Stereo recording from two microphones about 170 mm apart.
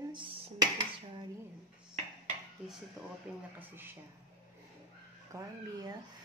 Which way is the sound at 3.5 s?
10° right (ahead or behind).